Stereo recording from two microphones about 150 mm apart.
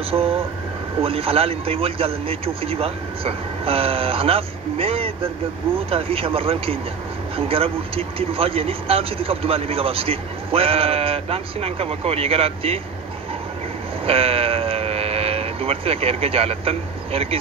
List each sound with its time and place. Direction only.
0.1 s speech: 40° right (ahead or behind)
14.0 s speech: 40° right (ahead or behind)